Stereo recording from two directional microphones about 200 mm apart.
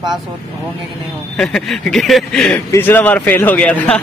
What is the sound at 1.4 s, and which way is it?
Speech, 5° left (ahead or behind).